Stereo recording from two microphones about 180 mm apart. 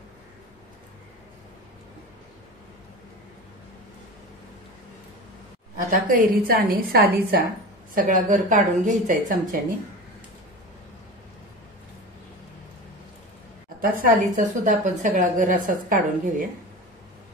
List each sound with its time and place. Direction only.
5.9 s a woman's voice: 50° right (ahead or behind)
13.7 s a woman's voice: 50° right (ahead or behind)